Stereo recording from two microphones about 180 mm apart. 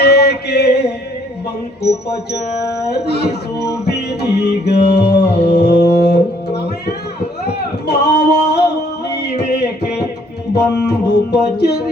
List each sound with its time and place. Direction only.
0.0 s mantra: 65° left (ahead or behind)
1.8 s speech: 65° left (ahead or behind)
3.8 s music: 65° left (ahead or behind)
7.4 s a sound: 65° left (ahead or behind)
10.5 s speech: 70° left (ahead or behind)